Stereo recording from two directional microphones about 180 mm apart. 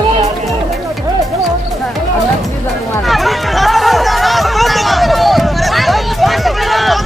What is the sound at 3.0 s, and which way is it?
Chatter, centre (ahead or behind).